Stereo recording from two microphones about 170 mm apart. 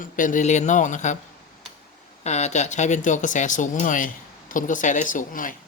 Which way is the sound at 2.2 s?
40° left (ahead or behind).